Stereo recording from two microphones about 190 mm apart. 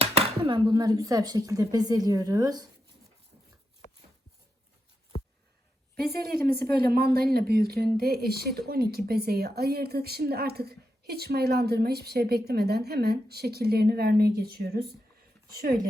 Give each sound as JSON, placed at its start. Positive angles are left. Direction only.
{"t": 0.0, "sound": "speech", "side_deg": -30}
{"t": 6.1, "sound": "speech", "side_deg": -55}